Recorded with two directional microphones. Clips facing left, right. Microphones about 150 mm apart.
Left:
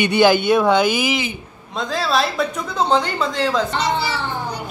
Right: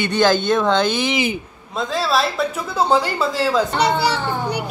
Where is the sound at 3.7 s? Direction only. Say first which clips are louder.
Right 3 dB; 70° right (ahead or behind).